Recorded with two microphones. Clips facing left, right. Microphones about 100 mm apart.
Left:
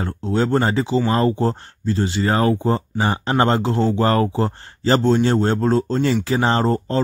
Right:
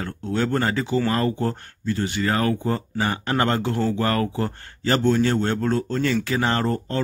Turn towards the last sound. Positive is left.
turn(degrees=25)  # may be behind; listen again after turning